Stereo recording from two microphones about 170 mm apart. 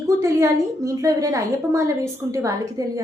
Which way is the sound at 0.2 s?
15° right (ahead or behind).